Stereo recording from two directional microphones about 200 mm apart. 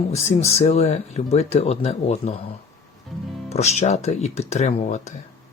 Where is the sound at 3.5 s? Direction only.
35° left (ahead or behind).